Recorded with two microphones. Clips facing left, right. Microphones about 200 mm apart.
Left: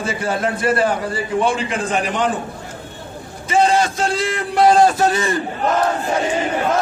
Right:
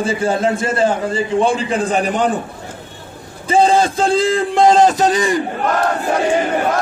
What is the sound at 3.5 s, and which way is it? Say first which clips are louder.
A man's voice: right 3 dB; 30° right (ahead or behind).